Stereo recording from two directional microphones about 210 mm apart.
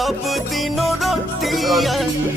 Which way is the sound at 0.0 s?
Centre (ahead or behind).